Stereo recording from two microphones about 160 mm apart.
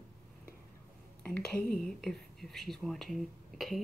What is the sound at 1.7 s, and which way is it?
Speech, centre (ahead or behind).